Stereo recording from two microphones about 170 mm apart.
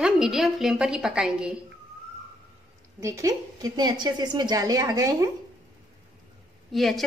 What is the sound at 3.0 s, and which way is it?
A woman's voice, 20° right (ahead or behind).